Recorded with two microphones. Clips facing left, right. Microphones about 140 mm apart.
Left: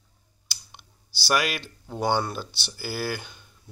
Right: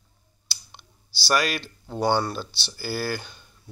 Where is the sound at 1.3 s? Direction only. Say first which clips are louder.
Right 1 dB; 15° left (ahead or behind).